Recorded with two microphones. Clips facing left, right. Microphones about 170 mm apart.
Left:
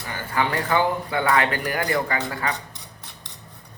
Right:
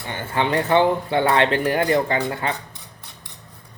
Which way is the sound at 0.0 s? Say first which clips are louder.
Right 2 dB; 25° right (ahead or behind).